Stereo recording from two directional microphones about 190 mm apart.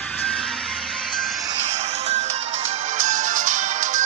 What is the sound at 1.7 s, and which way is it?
Music, 35° right (ahead or behind).